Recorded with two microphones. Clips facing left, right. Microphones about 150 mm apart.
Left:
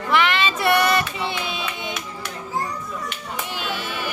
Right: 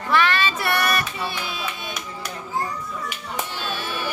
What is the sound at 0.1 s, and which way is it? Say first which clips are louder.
Child singing: even; 15° left (ahead or behind).